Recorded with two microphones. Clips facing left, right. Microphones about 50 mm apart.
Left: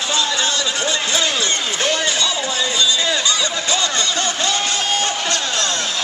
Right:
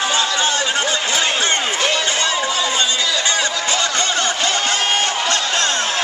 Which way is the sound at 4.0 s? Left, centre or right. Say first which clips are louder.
Right 2 dB; right.